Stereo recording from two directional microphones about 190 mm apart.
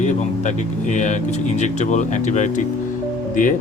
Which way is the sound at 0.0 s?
40° left (ahead or behind).